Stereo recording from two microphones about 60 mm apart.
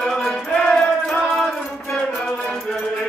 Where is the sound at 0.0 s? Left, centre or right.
Centre.